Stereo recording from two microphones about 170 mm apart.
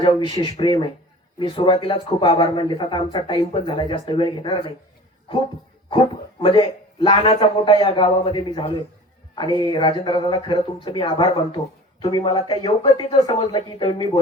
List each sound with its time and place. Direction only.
0.0 s speech: 30° left (ahead or behind)
6.4 s speech: 30° left (ahead or behind)